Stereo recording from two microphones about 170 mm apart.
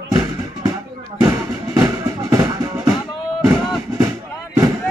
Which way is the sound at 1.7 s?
15° right (ahead or behind).